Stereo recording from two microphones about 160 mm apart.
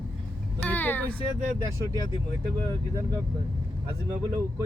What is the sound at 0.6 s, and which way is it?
Vehicle, 10° left (ahead or behind).